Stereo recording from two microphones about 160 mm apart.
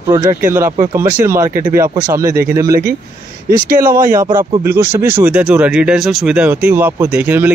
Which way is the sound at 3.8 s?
60° right (ahead or behind).